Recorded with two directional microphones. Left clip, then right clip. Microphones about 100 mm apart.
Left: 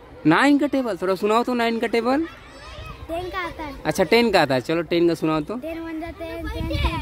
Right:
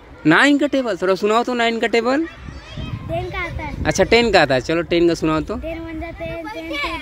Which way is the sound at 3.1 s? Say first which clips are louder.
Right 3 dB; 35° left (ahead or behind).